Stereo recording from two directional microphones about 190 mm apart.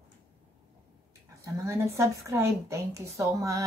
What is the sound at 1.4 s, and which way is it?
A woman's voice, 15° right (ahead or behind).